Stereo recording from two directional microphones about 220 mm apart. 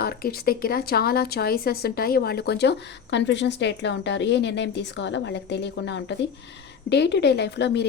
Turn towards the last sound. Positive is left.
turn(degrees=50)  # may be behind; listen again after turning